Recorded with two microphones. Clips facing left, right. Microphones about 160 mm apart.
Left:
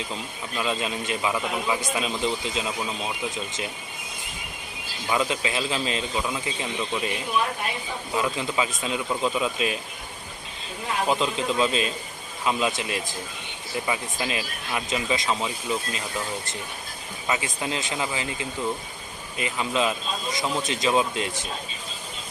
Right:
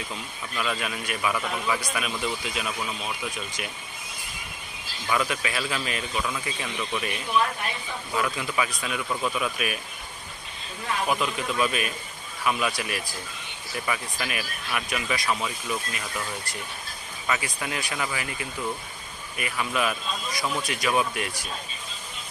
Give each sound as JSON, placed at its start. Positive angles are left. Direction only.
{"t": 0.5, "sound": "speech", "side_deg": 20}
{"t": 5.0, "sound": "speech", "side_deg": 20}
{"t": 11.0, "sound": "speech", "side_deg": 25}